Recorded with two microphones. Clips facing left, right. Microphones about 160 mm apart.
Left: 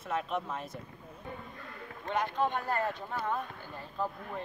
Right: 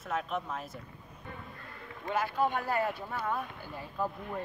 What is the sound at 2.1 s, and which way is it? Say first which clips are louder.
Speech: right 1 dB; 5° right (ahead or behind).